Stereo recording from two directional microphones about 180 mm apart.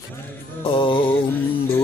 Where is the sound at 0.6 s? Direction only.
30° left (ahead or behind).